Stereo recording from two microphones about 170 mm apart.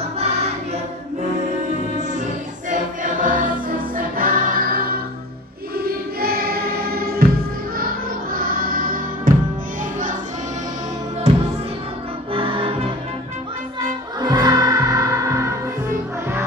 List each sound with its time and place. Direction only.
0.2 s music: 40° right (ahead or behind)
2.7 s choir: 50° right (ahead or behind)
5.8 s music: 60° right (ahead or behind)
11.3 s music: 40° right (ahead or behind)
14.2 s music: 20° right (ahead or behind)